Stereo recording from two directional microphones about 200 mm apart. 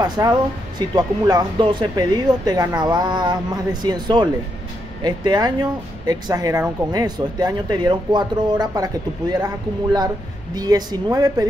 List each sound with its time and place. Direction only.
0.0 s speech: 20° right (ahead or behind)